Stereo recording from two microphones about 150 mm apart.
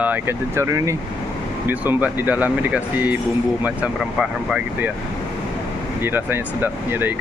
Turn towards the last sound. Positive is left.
turn(degrees=-15)  # may be behind; listen again after turning